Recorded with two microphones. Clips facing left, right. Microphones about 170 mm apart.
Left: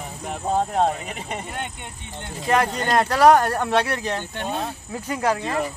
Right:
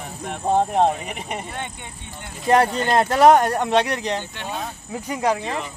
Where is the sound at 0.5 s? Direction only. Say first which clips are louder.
Right 3 dB; 20° right (ahead or behind).